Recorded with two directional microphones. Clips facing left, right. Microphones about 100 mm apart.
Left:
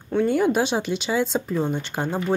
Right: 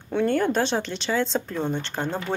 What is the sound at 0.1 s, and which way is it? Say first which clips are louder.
A woman's voice: left 2 dB; 5° left (ahead or behind).